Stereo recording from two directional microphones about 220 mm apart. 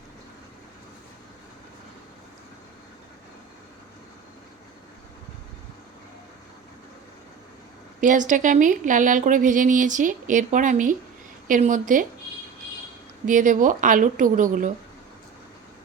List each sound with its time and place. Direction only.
8.0 s a woman's voice: 35° right (ahead or behind)
13.2 s a woman's voice: 35° right (ahead or behind)